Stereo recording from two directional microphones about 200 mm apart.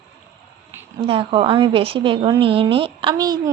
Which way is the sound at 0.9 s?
30° right (ahead or behind).